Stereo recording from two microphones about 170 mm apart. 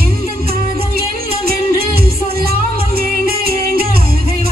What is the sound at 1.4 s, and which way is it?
Music, 60° right (ahead or behind).